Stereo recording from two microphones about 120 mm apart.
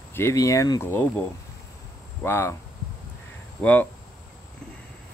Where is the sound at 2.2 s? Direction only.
20° left (ahead or behind).